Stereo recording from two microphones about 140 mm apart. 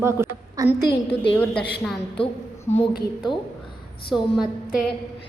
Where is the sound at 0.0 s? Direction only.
20° right (ahead or behind).